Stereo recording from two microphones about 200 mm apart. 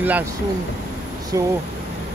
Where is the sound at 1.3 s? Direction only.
15° right (ahead or behind).